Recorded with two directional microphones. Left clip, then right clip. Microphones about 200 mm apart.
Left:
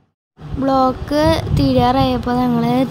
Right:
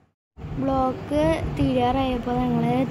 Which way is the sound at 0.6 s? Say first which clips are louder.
Left 8 dB; 35° left (ahead or behind).